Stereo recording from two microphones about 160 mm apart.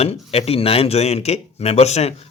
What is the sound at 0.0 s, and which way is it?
Speech, 40° left (ahead or behind).